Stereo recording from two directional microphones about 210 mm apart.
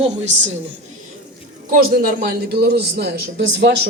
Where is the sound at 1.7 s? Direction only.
45° right (ahead or behind).